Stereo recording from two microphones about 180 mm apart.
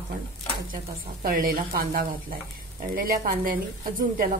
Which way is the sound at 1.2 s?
55° right (ahead or behind).